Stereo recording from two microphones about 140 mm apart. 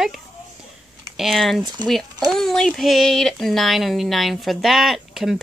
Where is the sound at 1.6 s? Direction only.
30° right (ahead or behind).